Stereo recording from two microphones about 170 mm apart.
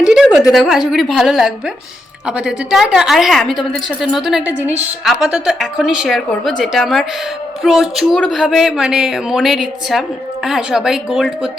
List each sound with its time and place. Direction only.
0.0 s a woman's voice: 5° right (ahead or behind)